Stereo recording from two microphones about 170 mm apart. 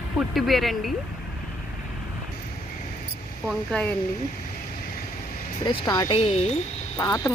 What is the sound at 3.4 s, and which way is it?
Speech, centre (ahead or behind).